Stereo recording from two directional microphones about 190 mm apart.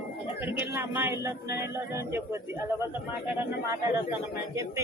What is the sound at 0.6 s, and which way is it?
Speech, 10° right (ahead or behind).